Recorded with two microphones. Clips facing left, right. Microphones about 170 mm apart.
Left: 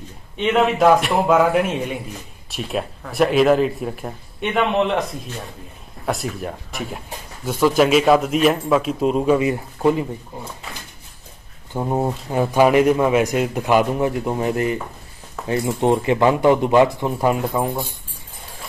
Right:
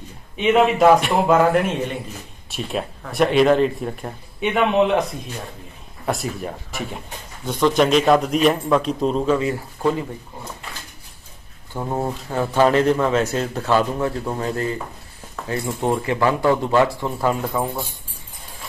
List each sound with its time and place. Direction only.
0.4 s a man's voice: 5° right (ahead or behind)
6.0 s a man's voice: centre (ahead or behind); by 10.0 s 20° left (ahead or behind)
11.7 s a man's voice: 15° left (ahead or behind)